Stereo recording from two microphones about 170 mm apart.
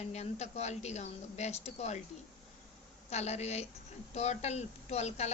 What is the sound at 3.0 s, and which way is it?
A woman's voice, 40° left (ahead or behind).